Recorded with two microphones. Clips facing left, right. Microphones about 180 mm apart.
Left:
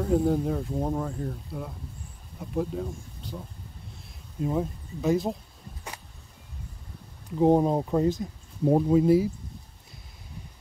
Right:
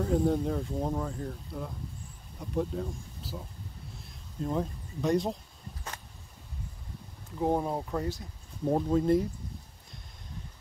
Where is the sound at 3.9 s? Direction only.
5° left (ahead or behind).